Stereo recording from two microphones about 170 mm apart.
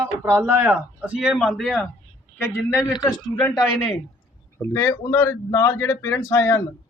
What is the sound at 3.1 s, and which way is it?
Speech, 10° left (ahead or behind).